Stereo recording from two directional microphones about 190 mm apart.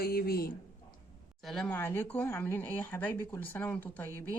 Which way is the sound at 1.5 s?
5° left (ahead or behind).